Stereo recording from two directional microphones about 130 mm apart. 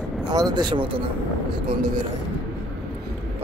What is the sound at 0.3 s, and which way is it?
Speech, 30° right (ahead or behind).